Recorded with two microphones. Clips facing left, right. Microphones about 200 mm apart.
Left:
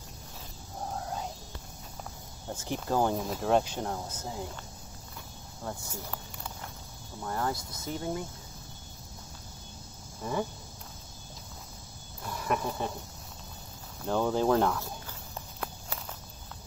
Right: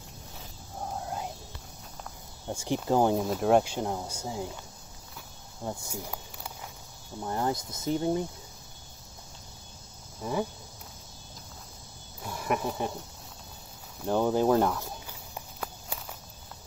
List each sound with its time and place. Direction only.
2.5 s speech: 15° right (ahead or behind)
5.6 s snake: 15° right (ahead or behind)
7.2 s speech: 20° right (ahead or behind)
10.2 s speech: 10° right (ahead or behind)
12.2 s speech: 10° right (ahead or behind)
14.0 s speech: 15° right (ahead or behind)
14.8 s walk: 15° right (ahead or behind)